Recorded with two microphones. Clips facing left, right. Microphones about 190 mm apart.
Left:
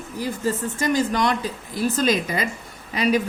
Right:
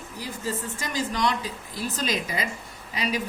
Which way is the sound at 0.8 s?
50° left (ahead or behind).